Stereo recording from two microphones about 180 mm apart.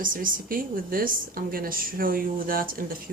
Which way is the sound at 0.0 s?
50° right (ahead or behind).